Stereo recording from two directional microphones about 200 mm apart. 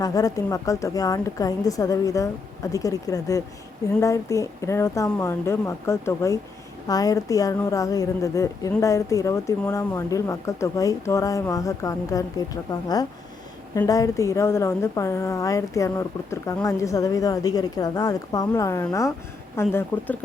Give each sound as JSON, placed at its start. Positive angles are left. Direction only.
{"t": 0.0, "sound": "a woman's voice", "side_deg": 20}